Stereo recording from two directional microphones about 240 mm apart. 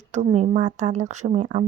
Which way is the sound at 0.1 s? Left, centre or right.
Right.